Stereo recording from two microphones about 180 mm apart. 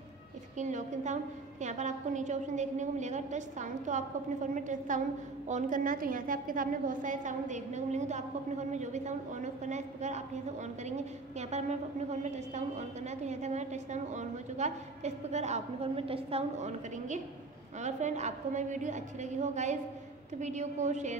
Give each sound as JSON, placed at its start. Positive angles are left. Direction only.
{"t": 0.6, "sound": "a woman's voice", "side_deg": -40}